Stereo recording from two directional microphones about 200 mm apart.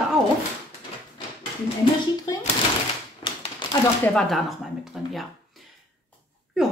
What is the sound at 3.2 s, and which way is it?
Typewriter, 25° left (ahead or behind).